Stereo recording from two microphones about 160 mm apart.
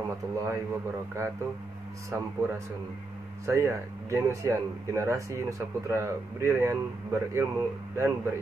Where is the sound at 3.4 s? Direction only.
15° right (ahead or behind).